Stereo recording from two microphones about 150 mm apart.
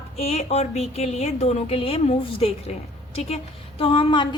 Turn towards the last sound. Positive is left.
turn(degrees=30)  # may be behind; listen again after turning